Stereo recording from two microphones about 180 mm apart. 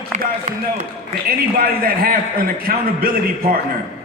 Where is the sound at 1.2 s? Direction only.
55° right (ahead or behind).